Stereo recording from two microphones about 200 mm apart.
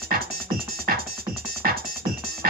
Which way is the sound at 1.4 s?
50° right (ahead or behind).